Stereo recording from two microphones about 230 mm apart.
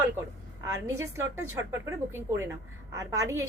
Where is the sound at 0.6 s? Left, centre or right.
Centre.